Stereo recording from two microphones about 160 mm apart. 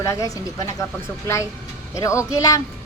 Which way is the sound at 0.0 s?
20° left (ahead or behind).